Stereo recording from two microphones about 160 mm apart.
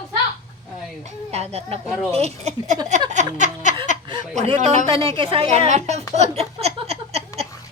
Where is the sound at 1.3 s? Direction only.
40° right (ahead or behind).